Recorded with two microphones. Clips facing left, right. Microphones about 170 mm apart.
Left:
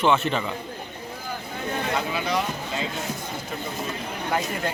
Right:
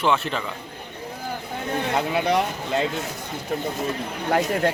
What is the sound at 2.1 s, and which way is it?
Speech, 60° right (ahead or behind).